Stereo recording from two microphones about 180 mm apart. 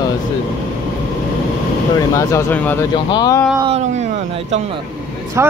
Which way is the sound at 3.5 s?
30° right (ahead or behind).